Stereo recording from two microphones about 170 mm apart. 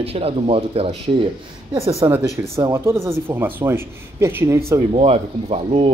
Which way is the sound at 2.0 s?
20° right (ahead or behind).